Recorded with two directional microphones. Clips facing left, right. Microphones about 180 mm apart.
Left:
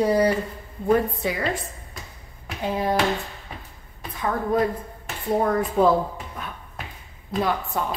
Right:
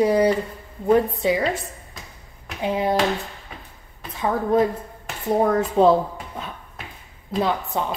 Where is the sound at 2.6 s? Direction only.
15° right (ahead or behind).